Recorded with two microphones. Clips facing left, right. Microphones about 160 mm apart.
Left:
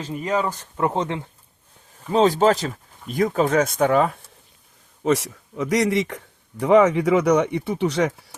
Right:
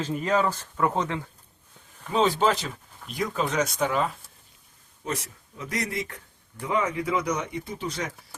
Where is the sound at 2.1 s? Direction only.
40° left (ahead or behind).